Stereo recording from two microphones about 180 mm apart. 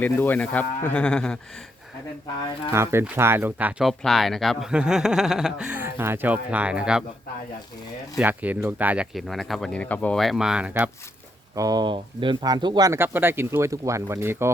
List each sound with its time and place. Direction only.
0.0 s speech: 10° left (ahead or behind)
2.7 s speech: 15° right (ahead or behind)
8.2 s speech: 10° right (ahead or behind)
11.5 s speech: 20° right (ahead or behind)